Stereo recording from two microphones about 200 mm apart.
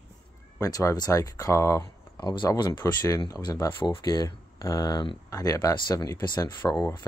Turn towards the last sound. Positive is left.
turn(degrees=15)  # may be behind; listen again after turning